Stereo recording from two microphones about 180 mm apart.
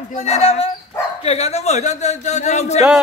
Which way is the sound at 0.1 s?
35° left (ahead or behind).